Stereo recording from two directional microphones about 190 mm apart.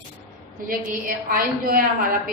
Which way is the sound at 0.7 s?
50° right (ahead or behind).